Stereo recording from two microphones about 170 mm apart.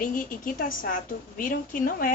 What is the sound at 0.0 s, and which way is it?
A woman's voice, 55° left (ahead or behind).